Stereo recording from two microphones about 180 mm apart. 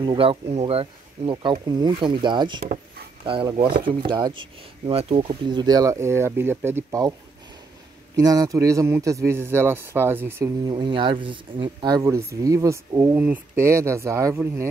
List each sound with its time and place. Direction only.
0.0 s speech: 30° right (ahead or behind)
8.2 s speech: 20° right (ahead or behind)